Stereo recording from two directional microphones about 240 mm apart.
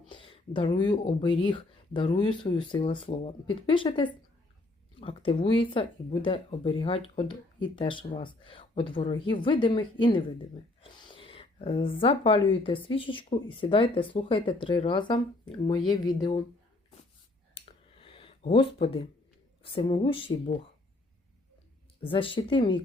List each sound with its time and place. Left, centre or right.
0.1 s speech: left
17.5 s a sound: left
18.5 s speech: left
22.0 s speech: left